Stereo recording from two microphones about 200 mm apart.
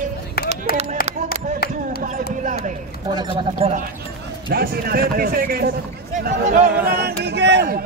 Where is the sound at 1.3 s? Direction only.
50° left (ahead or behind).